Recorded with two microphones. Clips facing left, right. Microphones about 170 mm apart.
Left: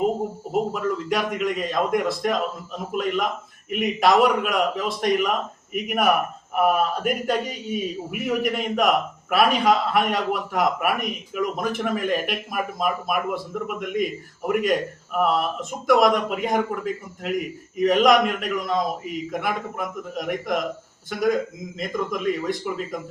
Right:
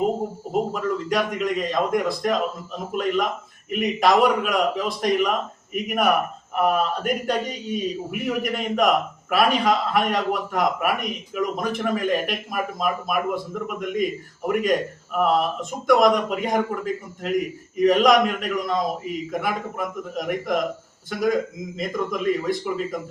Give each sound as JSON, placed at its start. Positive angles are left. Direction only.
{"t": 0.5, "sound": "a man's voice", "side_deg": 0}